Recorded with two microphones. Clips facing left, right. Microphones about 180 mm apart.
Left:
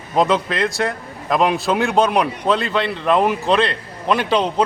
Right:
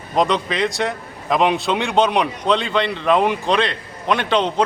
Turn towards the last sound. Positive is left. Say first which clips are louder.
# left 1 dB
turn(degrees=5)  # may be behind; listen again after turning